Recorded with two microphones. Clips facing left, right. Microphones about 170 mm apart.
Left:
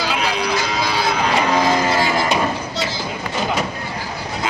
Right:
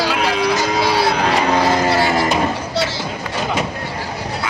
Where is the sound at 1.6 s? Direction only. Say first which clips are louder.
Right 2 dB; 65° right (ahead or behind).